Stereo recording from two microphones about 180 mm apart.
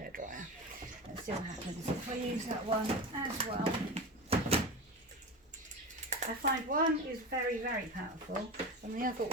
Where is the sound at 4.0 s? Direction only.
35° right (ahead or behind).